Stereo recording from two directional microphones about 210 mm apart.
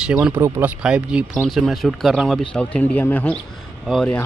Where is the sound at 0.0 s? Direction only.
5° right (ahead or behind).